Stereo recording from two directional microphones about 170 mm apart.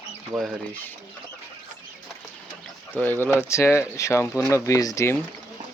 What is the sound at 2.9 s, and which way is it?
Speech, 10° left (ahead or behind).